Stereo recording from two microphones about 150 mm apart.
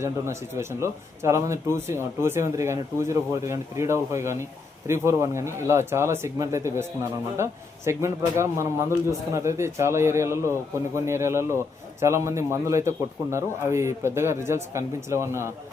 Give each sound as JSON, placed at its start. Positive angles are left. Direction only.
{"t": 0.0, "sound": "speech", "side_deg": -20}